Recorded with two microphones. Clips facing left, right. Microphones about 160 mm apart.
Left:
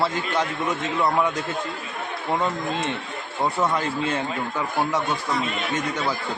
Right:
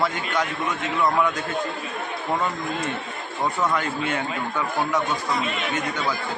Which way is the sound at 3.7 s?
30° left (ahead or behind).